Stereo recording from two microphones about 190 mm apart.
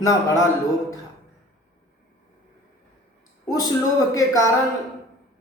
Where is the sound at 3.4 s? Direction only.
20° left (ahead or behind).